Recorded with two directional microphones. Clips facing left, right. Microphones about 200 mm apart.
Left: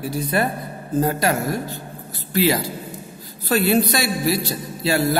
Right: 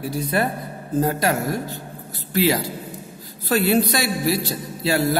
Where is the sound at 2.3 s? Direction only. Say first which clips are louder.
Left 1 dB; centre (ahead or behind).